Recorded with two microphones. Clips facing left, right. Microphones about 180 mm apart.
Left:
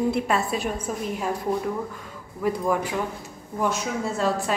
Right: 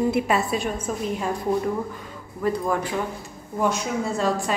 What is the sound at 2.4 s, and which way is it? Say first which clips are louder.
A woman's voice: even; 10° left (ahead or behind).